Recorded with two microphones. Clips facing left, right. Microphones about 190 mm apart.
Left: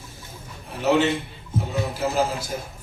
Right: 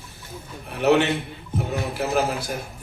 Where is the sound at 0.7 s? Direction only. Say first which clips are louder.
Right 1 dB; 65° right (ahead or behind).